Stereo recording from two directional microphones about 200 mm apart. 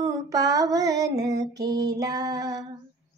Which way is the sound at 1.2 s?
20° right (ahead or behind).